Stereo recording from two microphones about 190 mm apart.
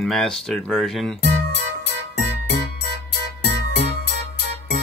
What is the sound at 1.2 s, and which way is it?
Music, 60° left (ahead or behind).